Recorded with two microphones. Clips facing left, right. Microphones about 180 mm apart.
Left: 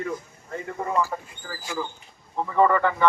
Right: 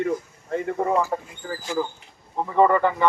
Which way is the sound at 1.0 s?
25° right (ahead or behind).